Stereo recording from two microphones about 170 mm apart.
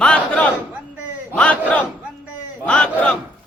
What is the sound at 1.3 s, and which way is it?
Battle cry, 5° left (ahead or behind).